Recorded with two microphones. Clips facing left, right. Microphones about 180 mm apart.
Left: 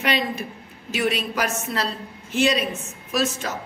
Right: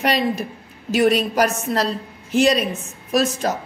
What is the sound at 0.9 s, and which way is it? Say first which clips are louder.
A woman's voice: right 7 dB; 40° right (ahead or behind).